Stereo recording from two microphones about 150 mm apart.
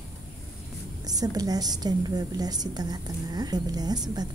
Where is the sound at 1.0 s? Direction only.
25° right (ahead or behind).